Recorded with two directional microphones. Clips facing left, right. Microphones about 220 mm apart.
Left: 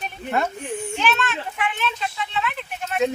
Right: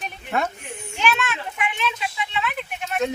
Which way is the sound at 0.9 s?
10° right (ahead or behind).